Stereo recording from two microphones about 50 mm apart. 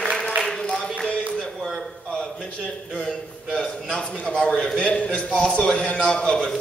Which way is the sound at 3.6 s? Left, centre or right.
Centre.